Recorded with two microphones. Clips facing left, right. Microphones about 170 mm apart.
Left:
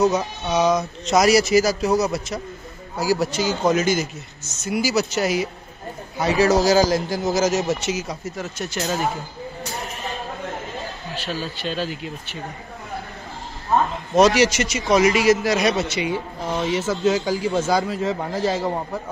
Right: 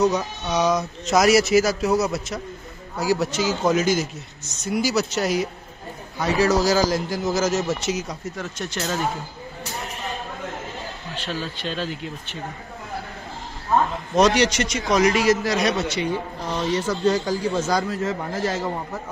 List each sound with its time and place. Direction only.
0.0 s a man's voice: 5° left (ahead or behind)
6.1 s a man's voice: 15° left (ahead or behind)
7.8 s a man's voice: centre (ahead or behind)
11.1 s a man's voice: 5° left (ahead or behind)
14.1 s a man's voice: 5° left (ahead or behind)